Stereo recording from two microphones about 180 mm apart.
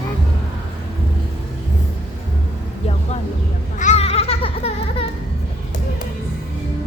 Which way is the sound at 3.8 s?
40° left (ahead or behind).